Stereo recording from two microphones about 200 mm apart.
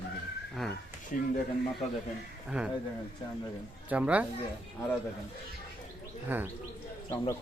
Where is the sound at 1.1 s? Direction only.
40° left (ahead or behind).